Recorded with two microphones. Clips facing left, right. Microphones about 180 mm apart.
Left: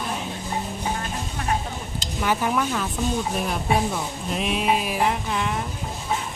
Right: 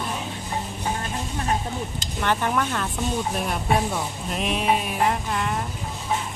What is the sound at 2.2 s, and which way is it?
Speech, 5° left (ahead or behind).